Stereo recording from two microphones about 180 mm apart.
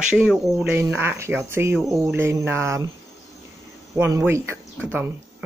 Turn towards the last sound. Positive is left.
turn(degrees=-15)  # may be behind; listen again after turning